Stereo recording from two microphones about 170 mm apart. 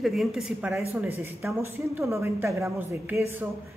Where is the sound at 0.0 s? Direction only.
Centre (ahead or behind).